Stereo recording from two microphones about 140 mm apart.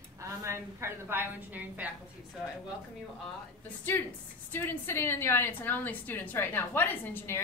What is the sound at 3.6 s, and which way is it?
A woman's voice, 15° left (ahead or behind).